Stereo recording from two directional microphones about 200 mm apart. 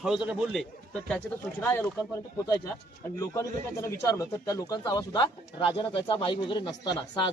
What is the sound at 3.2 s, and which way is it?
Speech, 15° left (ahead or behind).